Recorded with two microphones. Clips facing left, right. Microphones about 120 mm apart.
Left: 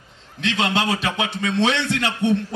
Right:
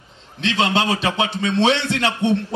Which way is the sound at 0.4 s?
25° right (ahead or behind).